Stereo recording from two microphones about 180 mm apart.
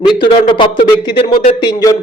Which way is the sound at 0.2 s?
30° left (ahead or behind).